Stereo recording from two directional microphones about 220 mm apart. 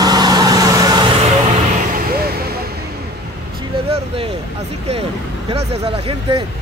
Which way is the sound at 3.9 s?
25° right (ahead or behind).